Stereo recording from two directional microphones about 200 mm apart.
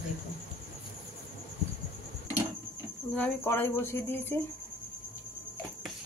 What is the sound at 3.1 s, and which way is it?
Speech, 10° left (ahead or behind).